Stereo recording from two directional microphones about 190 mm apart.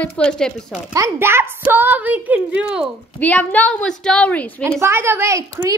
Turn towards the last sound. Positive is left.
turn(degrees=-15)  # may be behind; listen again after turning